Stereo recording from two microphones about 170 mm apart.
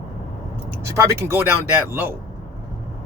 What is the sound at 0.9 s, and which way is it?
Speech, 15° right (ahead or behind).